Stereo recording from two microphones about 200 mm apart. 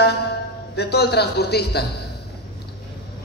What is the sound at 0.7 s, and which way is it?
A man's voice, 55° left (ahead or behind).